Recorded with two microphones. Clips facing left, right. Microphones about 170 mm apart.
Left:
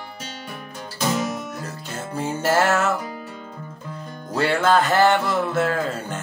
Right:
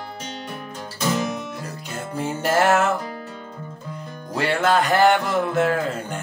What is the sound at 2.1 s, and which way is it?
Music, 15° right (ahead or behind).